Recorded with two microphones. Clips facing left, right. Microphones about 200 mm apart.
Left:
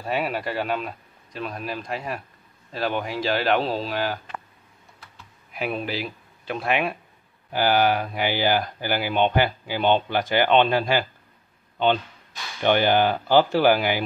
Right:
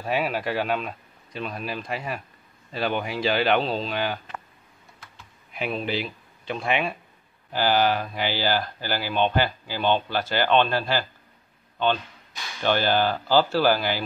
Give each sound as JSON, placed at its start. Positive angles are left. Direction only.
{"t": 0.0, "sound": "speech", "side_deg": 0}
{"t": 5.5, "sound": "speech", "side_deg": 5}
{"t": 12.6, "sound": "speech", "side_deg": 15}